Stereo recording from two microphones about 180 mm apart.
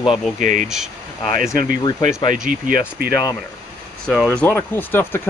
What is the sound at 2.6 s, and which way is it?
Speech, 55° right (ahead or behind).